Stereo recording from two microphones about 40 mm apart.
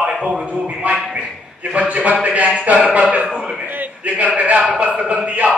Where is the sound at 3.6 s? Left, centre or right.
Right.